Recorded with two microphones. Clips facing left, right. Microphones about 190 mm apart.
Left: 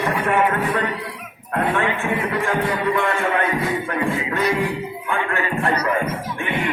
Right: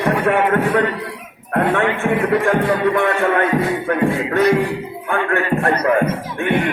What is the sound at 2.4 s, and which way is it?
Music, 55° right (ahead or behind).